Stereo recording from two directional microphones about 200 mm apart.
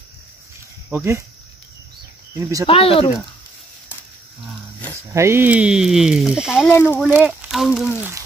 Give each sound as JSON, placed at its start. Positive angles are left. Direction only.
{"t": 0.8, "sound": "speech", "side_deg": -10}
{"t": 2.6, "sound": "speech", "side_deg": 30}
{"t": 5.1, "sound": "speech", "side_deg": -15}
{"t": 6.7, "sound": "speech", "side_deg": 10}
{"t": 7.0, "sound": "speech", "side_deg": -5}